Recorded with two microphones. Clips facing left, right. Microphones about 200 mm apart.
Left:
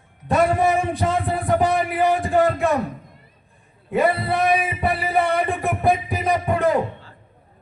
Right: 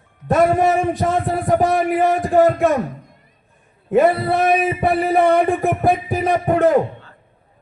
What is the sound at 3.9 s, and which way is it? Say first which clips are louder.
A man's voice: right 5 dB; 45° right (ahead or behind).